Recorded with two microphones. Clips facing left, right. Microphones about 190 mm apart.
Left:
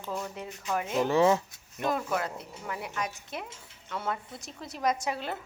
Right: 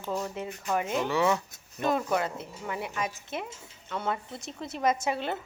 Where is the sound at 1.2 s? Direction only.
30° left (ahead or behind).